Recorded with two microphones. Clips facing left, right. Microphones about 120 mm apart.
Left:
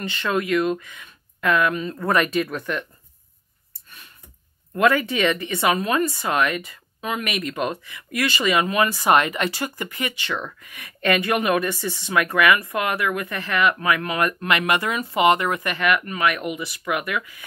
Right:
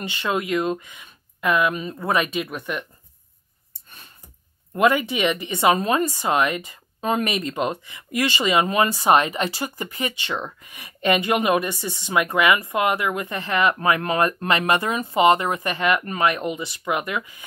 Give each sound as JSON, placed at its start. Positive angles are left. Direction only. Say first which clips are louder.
{"t": 0.1, "sound": "speech", "louder": "left 1 dB", "side_deg": -15}
{"t": 4.7, "sound": "speech", "louder": "even", "side_deg": -20}